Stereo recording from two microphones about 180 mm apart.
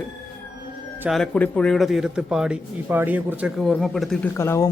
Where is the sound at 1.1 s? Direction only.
5° left (ahead or behind).